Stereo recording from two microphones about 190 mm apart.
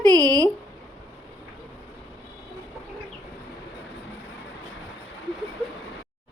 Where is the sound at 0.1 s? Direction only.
20° right (ahead or behind).